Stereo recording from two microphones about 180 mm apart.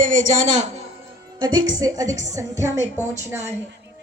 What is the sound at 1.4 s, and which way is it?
A woman's voice, 20° right (ahead or behind).